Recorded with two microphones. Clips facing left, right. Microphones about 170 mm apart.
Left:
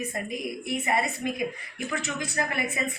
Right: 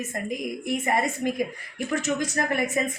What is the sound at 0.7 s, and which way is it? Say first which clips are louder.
A woman's voice: right 2 dB; 45° right (ahead or behind).